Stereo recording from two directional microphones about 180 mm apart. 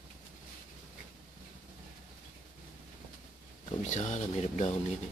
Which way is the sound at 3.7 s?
40° left (ahead or behind).